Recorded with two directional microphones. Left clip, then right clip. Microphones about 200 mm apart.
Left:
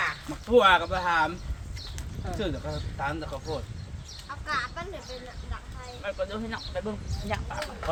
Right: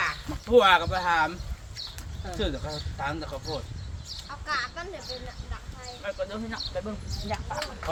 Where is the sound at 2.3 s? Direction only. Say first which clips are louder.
Right 1 dB; 15° right (ahead or behind).